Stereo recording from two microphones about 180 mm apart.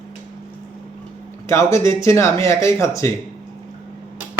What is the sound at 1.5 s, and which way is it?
Speech, 15° left (ahead or behind).